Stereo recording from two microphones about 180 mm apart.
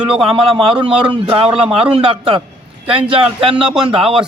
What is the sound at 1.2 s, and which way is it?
Speech, 30° right (ahead or behind).